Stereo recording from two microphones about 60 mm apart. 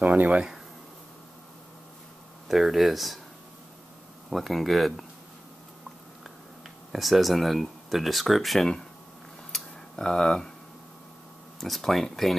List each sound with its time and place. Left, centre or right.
0.0 s speech: right
2.4 s speech: centre
4.3 s speech: centre
6.9 s speech: centre
9.5 s tick-tock: centre
11.6 s speech: centre